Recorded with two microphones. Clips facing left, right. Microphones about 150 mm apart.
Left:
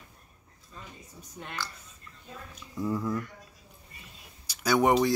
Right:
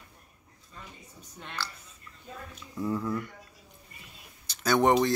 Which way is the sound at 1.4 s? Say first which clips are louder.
Even; 10° left (ahead or behind).